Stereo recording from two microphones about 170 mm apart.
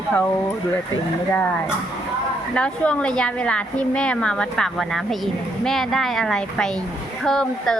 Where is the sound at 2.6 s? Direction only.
5° left (ahead or behind).